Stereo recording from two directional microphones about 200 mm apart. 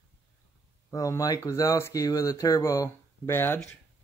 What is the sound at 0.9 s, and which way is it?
Speech, 15° left (ahead or behind).